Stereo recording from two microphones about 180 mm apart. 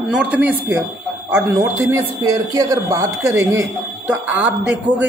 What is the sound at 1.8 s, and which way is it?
A man's voice, 20° right (ahead or behind).